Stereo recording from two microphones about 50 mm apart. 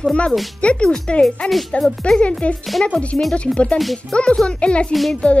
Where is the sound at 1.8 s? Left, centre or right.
Centre.